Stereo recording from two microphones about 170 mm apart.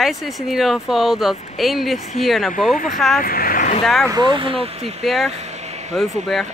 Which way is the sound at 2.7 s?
50° left (ahead or behind).